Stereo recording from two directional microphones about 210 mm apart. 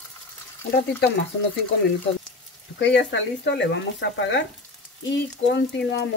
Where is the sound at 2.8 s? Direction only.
55° left (ahead or behind).